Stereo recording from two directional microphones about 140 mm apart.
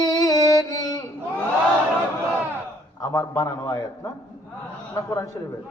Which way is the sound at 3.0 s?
25° left (ahead or behind).